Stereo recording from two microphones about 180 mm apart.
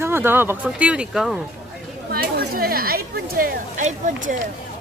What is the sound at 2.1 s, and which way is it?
Speech, 60° right (ahead or behind).